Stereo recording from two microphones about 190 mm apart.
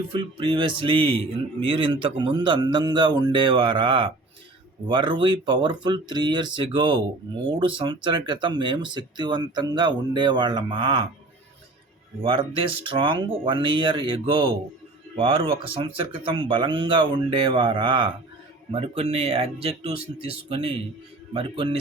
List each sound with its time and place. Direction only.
0.1 s speech: 25° right (ahead or behind)
12.2 s speech: 25° right (ahead or behind)